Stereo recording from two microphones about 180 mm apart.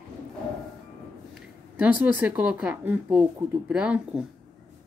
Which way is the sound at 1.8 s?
10° right (ahead or behind).